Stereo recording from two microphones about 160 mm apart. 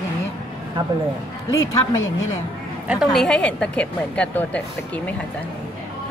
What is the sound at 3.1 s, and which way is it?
Speech, 5° left (ahead or behind).